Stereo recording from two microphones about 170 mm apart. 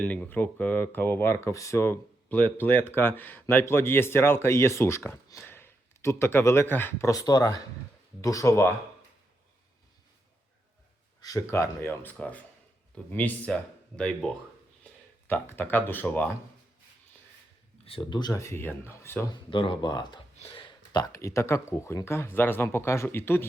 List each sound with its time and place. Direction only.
0.0 s speech: 10° left (ahead or behind)
11.2 s speech: 20° left (ahead or behind)
15.3 s speech: 10° left (ahead or behind)
17.8 s speech: 30° left (ahead or behind); by 19.2 s 15° left (ahead or behind)
19.3 s speech: 30° left (ahead or behind); by 23.5 s 15° left (ahead or behind)